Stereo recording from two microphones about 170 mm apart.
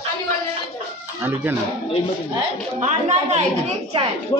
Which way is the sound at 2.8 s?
40° right (ahead or behind).